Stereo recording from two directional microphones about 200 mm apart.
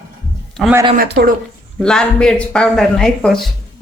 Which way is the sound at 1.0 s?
45° right (ahead or behind).